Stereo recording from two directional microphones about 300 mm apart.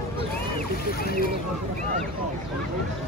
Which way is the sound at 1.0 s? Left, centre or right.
Left.